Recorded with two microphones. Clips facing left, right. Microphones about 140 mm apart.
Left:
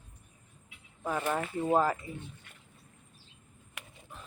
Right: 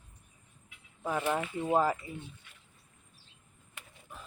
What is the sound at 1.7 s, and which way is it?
Speech, 15° right (ahead or behind).